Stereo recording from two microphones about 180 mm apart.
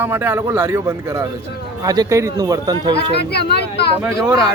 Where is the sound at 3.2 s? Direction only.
65° left (ahead or behind).